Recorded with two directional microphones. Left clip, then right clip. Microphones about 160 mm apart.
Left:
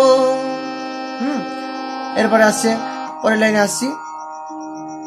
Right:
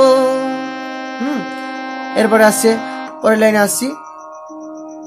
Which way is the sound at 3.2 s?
40° right (ahead or behind).